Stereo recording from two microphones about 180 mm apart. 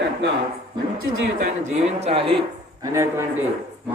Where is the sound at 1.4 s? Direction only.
40° right (ahead or behind).